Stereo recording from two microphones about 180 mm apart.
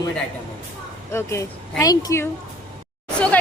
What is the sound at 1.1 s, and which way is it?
A woman's voice, 15° left (ahead or behind).